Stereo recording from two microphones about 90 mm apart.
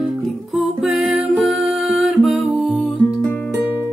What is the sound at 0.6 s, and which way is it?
Music, centre (ahead or behind).